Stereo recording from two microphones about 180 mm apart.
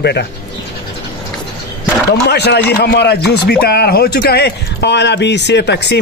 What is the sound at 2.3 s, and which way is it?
Speech, 65° left (ahead or behind).